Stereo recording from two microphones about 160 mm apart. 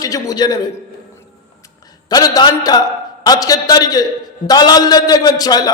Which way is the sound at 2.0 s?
25° left (ahead or behind).